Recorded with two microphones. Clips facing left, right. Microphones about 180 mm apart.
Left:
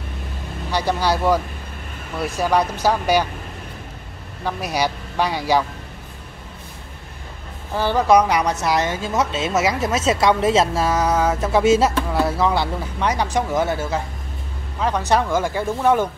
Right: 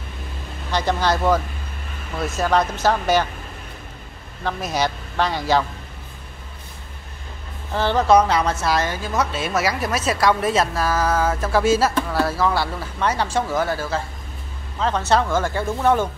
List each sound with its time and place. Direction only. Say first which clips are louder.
0.7 s speech: even; 10° left (ahead or behind)
4.5 s speech: left 1 dB; 10° left (ahead or behind)
7.7 s a woman's voice: even; 10° left (ahead or behind)